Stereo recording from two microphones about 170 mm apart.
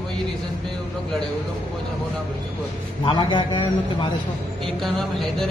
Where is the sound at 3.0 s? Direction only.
30° left (ahead or behind).